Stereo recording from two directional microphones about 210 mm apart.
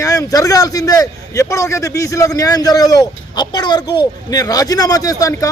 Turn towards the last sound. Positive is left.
turn(degrees=15)  # may be behind; listen again after turning